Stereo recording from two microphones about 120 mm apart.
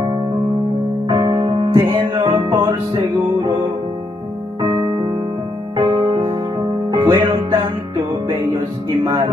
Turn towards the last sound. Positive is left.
turn(degrees=-30)  # may be behind; listen again after turning